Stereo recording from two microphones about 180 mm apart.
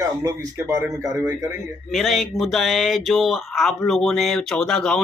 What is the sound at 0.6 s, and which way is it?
Speech, 10° right (ahead or behind).